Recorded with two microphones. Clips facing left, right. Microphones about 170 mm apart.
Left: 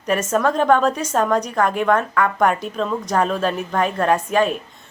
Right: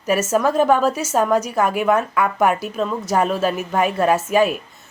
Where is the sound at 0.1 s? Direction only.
5° right (ahead or behind).